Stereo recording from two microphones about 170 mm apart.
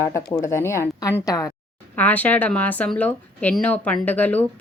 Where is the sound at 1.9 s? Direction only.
10° left (ahead or behind).